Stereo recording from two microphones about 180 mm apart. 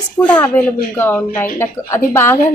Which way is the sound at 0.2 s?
10° left (ahead or behind).